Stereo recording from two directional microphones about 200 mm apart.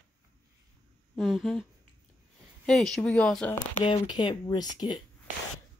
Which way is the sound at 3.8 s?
25° left (ahead or behind).